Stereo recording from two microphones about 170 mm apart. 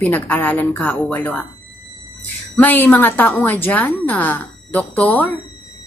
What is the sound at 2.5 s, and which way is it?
A woman's voice, 10° left (ahead or behind).